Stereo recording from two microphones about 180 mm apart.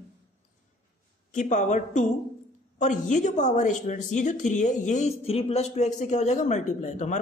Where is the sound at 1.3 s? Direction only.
45° left (ahead or behind).